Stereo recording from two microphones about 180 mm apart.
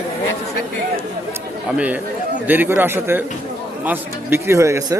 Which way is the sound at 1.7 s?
10° right (ahead or behind).